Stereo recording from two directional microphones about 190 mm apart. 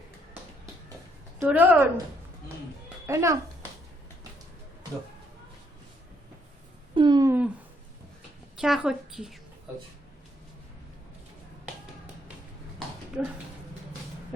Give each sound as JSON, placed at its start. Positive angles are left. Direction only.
{"t": 1.4, "sound": "a woman's voice", "side_deg": -10}
{"t": 3.1, "sound": "a woman's voice", "side_deg": -15}
{"t": 6.9, "sound": "a sound", "side_deg": -25}
{"t": 8.5, "sound": "a woman's voice", "side_deg": 0}
{"t": 13.2, "sound": "a woman's voice", "side_deg": -5}